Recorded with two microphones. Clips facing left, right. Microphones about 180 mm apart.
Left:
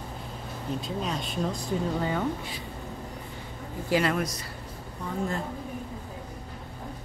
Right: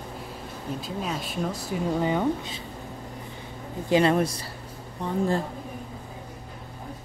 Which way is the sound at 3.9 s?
25° right (ahead or behind).